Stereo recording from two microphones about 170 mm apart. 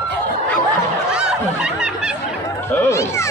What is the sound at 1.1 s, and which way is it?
Snicker, 5° right (ahead or behind).